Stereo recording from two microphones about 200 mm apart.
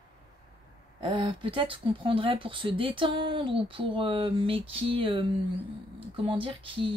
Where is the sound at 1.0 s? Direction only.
25° right (ahead or behind).